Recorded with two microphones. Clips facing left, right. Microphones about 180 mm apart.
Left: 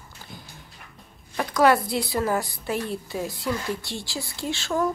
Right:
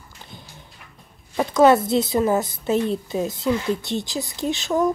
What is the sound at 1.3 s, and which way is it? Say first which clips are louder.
A woman's voice: right 5 dB; 25° right (ahead or behind).